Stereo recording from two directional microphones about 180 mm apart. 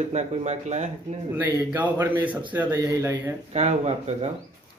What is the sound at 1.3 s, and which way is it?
A man's voice, 10° right (ahead or behind).